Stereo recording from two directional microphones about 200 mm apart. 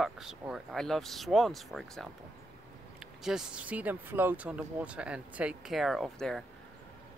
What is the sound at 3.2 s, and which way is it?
Speech, 5° right (ahead or behind).